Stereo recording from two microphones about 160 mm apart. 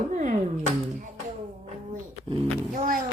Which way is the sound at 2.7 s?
60° right (ahead or behind).